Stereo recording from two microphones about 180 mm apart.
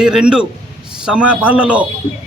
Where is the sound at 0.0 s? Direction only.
5° right (ahead or behind).